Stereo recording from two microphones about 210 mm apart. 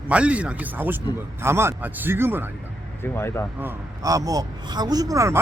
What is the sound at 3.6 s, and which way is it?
A man's voice, 15° right (ahead or behind).